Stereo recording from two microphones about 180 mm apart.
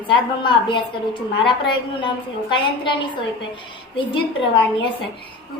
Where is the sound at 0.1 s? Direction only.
25° left (ahead or behind).